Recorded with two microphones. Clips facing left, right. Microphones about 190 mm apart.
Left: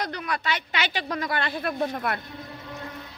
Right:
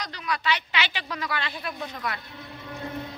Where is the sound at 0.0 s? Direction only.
50° left (ahead or behind).